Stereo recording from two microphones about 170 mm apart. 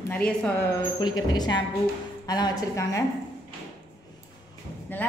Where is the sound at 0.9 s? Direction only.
25° left (ahead or behind).